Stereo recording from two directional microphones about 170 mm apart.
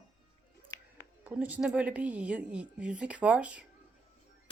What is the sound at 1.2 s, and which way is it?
A woman's voice, 10° right (ahead or behind).